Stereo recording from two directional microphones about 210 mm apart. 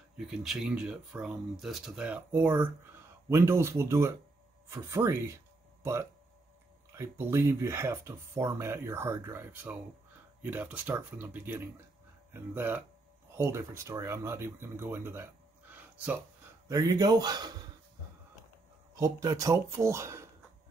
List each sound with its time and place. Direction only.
0.3 s speech: centre (ahead or behind)
5.8 s a sound: 10° right (ahead or behind)
7.0 s a man's voice: 10° right (ahead or behind)
18.9 s speech: 15° right (ahead or behind)